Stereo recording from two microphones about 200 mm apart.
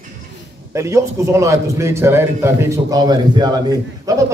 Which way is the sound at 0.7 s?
15° right (ahead or behind).